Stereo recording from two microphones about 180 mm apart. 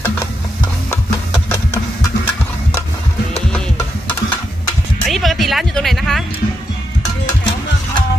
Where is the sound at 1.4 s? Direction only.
15° left (ahead or behind).